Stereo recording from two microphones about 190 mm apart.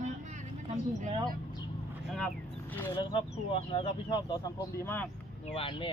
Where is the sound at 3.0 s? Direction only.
30° left (ahead or behind).